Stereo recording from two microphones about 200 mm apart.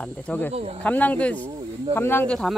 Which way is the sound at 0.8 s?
5° left (ahead or behind).